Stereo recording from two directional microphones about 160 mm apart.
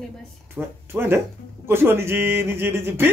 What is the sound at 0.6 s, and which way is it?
Speech, 15° right (ahead or behind).